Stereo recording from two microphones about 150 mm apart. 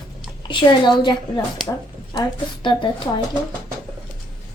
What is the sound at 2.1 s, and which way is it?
Speech, 30° left (ahead or behind).